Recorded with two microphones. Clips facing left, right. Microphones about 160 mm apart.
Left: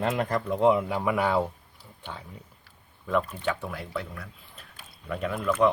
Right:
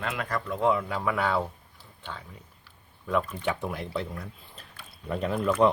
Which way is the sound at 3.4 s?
20° right (ahead or behind).